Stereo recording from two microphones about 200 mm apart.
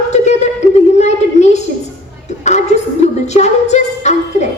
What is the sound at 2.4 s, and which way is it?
A woman's voice, 35° left (ahead or behind).